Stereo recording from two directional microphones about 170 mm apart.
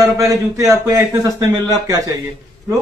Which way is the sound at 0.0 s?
20° right (ahead or behind).